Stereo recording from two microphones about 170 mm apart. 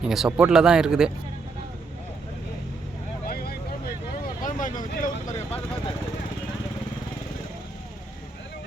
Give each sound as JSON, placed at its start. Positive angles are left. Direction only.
{"t": 0.0, "sound": "speech", "side_deg": -5}
{"t": 3.2, "sound": "vehicle", "side_deg": 65}
{"t": 4.4, "sound": "vehicle", "side_deg": 50}